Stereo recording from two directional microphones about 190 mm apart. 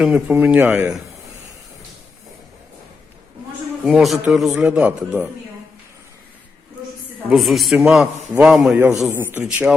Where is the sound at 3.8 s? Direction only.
5° right (ahead or behind).